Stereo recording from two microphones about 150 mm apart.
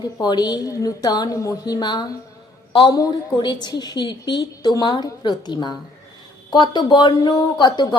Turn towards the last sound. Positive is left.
turn(degrees=30)  # may be behind; listen again after turning